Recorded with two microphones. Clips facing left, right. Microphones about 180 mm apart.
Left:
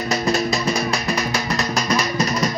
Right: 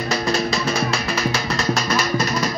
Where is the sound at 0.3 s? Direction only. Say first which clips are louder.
Left 2 dB; centre (ahead or behind).